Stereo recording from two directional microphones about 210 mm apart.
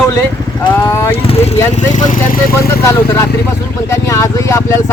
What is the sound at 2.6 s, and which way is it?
Speech, 15° left (ahead or behind).